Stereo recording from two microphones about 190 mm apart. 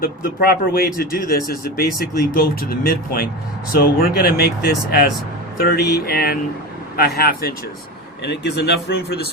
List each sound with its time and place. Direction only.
0.0 s speech: 50° left (ahead or behind)